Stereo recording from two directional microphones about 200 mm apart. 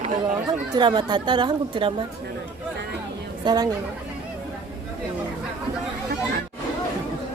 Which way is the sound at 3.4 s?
20° right (ahead or behind).